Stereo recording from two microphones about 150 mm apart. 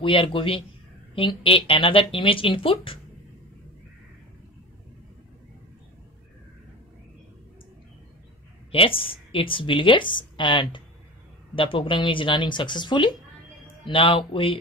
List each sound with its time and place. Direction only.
0.0 s speech: 35° left (ahead or behind)
8.7 s speech: 35° left (ahead or behind)